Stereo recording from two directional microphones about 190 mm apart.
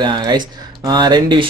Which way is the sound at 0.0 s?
25° right (ahead or behind).